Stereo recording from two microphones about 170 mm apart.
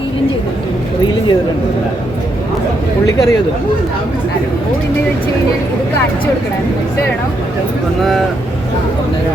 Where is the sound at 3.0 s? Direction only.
20° left (ahead or behind).